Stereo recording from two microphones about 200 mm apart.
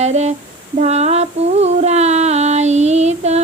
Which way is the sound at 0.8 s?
35° right (ahead or behind).